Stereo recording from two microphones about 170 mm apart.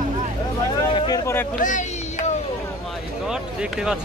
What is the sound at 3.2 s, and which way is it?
Speech, 5° right (ahead or behind).